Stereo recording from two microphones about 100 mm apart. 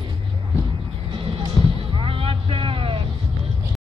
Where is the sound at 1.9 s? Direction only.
65° right (ahead or behind).